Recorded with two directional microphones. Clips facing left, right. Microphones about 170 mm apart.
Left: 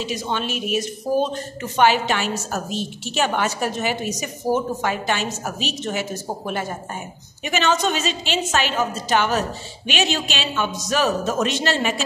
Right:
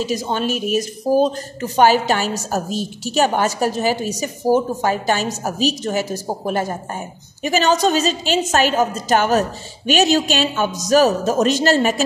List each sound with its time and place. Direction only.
0.0 s speech: 40° right (ahead or behind)